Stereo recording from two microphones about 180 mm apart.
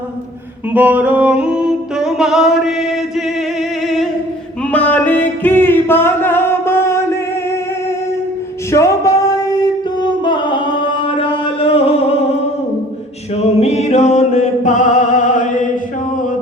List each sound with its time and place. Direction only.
0.7 s music: 10° right (ahead or behind)
3.8 s singing: centre (ahead or behind)
4.7 s music: 10° left (ahead or behind)
8.7 s a sound: 15° left (ahead or behind)
11.0 s music: 30° left (ahead or behind)
13.3 s music: 35° left (ahead or behind)